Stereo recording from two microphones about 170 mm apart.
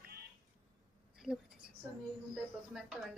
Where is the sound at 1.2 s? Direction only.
5° right (ahead or behind).